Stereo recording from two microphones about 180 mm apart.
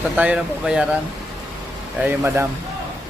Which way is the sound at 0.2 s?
5° right (ahead or behind).